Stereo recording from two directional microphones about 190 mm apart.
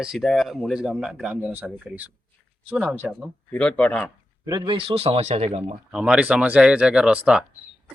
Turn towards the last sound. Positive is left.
turn(degrees=-5)  # may be behind; listen again after turning